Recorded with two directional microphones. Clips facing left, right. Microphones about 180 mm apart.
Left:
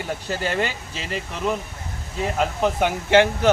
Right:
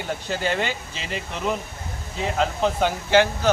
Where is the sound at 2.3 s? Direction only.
15° left (ahead or behind).